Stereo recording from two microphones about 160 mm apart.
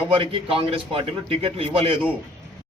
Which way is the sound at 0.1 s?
35° right (ahead or behind).